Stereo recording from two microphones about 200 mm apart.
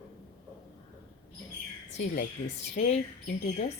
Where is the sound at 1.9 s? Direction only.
45° left (ahead or behind).